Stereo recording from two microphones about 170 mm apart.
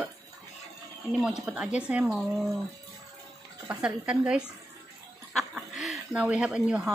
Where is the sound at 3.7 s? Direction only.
5° right (ahead or behind).